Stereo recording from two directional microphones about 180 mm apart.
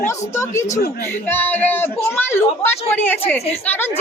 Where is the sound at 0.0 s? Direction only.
15° left (ahead or behind).